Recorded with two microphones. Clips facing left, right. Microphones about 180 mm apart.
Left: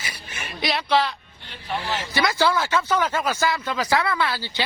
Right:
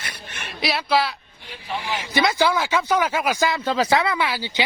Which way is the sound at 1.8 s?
15° right (ahead or behind).